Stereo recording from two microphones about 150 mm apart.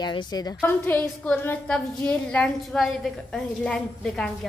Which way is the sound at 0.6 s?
15° left (ahead or behind).